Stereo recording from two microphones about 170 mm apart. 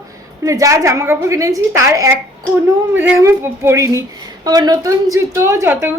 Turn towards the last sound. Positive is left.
turn(degrees=-15)  # may be behind; listen again after turning